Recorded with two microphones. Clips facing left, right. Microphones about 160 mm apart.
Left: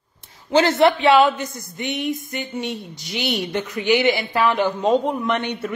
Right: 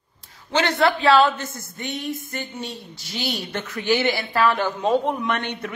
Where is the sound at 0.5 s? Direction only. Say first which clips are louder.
Left 5 dB; 30° left (ahead or behind).